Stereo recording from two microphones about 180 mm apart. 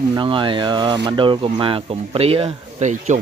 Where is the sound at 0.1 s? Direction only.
25° right (ahead or behind).